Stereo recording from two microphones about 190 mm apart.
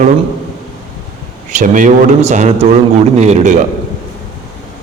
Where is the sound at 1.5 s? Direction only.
45° right (ahead or behind).